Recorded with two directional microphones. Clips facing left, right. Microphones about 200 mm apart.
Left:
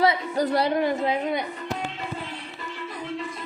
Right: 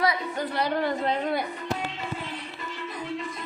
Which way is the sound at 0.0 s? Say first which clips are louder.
Left 4 dB; 25° left (ahead or behind).